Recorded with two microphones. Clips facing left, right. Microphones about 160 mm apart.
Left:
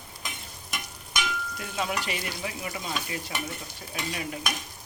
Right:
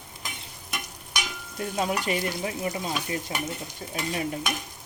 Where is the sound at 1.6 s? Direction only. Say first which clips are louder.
Right 5 dB; 40° right (ahead or behind).